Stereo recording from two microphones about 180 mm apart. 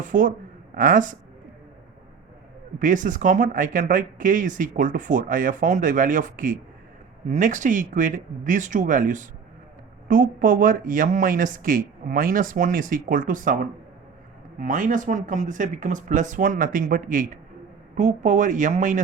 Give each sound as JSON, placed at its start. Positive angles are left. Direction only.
{"t": 0.0, "sound": "speech", "side_deg": -50}
{"t": 2.7, "sound": "speech", "side_deg": -45}